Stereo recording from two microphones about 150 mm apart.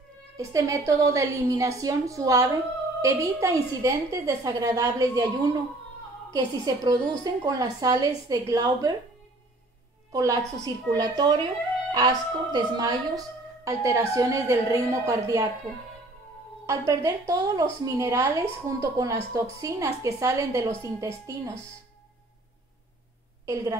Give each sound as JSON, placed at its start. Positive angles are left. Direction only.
{"t": 0.4, "sound": "a woman's voice", "side_deg": -20}
{"t": 6.3, "sound": "a woman's voice", "side_deg": -25}
{"t": 10.1, "sound": "a woman's voice", "side_deg": -25}
{"t": 16.6, "sound": "a woman's voice", "side_deg": -20}
{"t": 23.4, "sound": "a woman's voice", "side_deg": -20}